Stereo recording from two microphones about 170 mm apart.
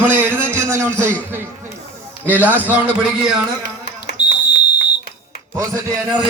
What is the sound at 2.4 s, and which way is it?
Speech, 10° right (ahead or behind).